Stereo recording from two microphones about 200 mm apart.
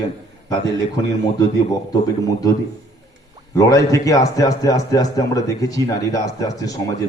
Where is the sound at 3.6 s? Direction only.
15° left (ahead or behind).